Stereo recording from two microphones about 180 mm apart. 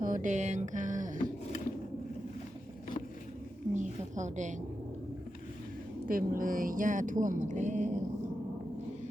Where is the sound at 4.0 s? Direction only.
40° right (ahead or behind).